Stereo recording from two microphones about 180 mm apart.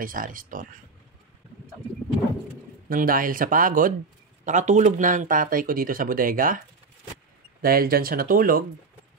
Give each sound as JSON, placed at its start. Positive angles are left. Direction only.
{"t": 0.0, "sound": "speech", "side_deg": -50}
{"t": 2.9, "sound": "speech", "side_deg": -50}
{"t": 7.6, "sound": "speech", "side_deg": -55}